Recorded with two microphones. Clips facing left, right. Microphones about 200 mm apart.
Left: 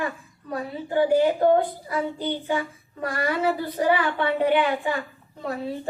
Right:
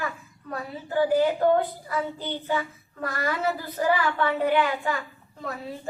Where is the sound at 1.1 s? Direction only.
20° left (ahead or behind).